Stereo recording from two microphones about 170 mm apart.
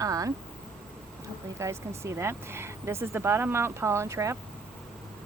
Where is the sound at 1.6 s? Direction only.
15° right (ahead or behind).